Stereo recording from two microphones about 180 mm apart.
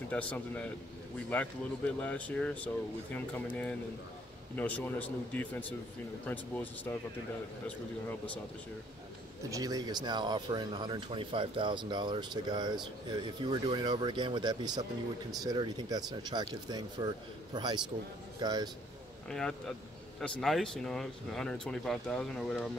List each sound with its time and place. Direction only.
0.1 s speech: 5° left (ahead or behind)
4.6 s speech: 10° left (ahead or behind)
9.5 s speech: 20° right (ahead or behind)
19.2 s speech: 5° left (ahead or behind)